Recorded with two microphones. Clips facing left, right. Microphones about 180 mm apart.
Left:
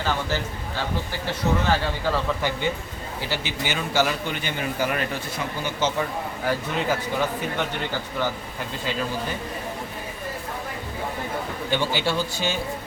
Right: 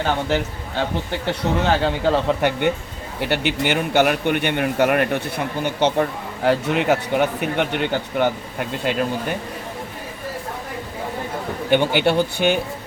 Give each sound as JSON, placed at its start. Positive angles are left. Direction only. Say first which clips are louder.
{"t": 0.0, "sound": "a man's voice", "louder": "right 5 dB", "side_deg": -60}
{"t": 11.7, "sound": "a man's voice", "louder": "right 8 dB", "side_deg": -60}